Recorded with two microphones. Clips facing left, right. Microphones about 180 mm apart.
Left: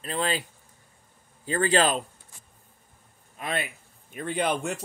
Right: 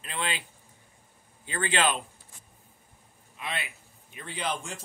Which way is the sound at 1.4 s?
40° left (ahead or behind).